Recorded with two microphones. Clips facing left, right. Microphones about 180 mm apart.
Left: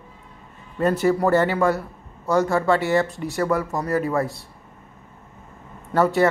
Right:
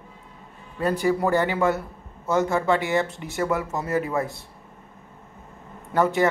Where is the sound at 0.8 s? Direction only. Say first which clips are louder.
Left 3 dB; 15° right (ahead or behind).